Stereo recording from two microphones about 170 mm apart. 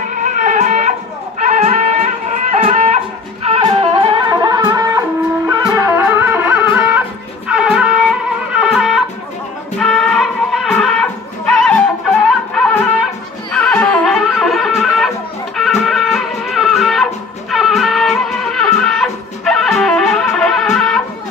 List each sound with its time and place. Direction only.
0.2 s music: 50° right (ahead or behind); by 11.7 s 5° left (ahead or behind)
13.5 s music: 5° left (ahead or behind)